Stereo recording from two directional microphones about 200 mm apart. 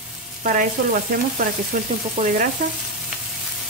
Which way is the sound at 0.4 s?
40° right (ahead or behind).